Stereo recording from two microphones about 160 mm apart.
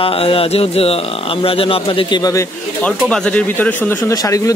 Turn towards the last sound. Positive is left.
turn(degrees=20)  # may be behind; listen again after turning